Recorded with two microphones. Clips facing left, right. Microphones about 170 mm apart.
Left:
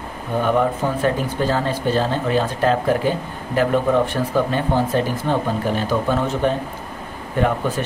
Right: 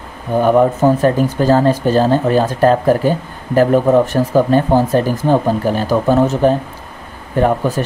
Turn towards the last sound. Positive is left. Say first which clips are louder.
# right 5 dB
turn(degrees=-40)  # may be behind; listen again after turning